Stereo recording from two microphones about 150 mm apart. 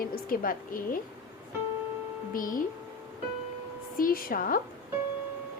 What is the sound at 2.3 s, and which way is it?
Speech, 65° left (ahead or behind).